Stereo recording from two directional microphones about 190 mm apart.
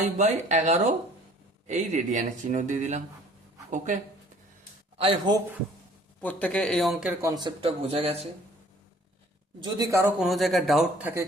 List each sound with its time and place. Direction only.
0.0 s speech: 40° right (ahead or behind)
4.9 s a man's voice: 30° right (ahead or behind)
6.2 s speech: 5° left (ahead or behind)
7.2 s speech: 20° right (ahead or behind)
9.6 s a man's voice: 20° right (ahead or behind)
10.2 s speech: centre (ahead or behind)